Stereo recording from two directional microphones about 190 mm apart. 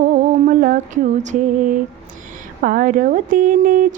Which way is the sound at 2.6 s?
45° right (ahead or behind).